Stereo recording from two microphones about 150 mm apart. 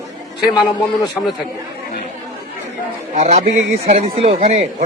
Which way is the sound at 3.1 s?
45° right (ahead or behind).